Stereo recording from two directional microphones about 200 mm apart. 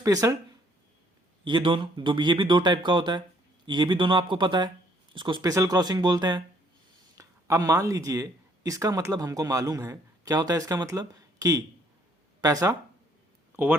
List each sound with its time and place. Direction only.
0.0 s speech: 15° right (ahead or behind)
1.5 s speech: 25° right (ahead or behind)